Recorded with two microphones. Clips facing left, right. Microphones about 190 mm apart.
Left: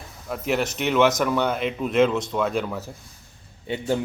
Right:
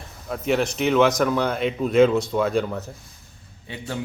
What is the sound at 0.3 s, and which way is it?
Speech, 5° left (ahead or behind).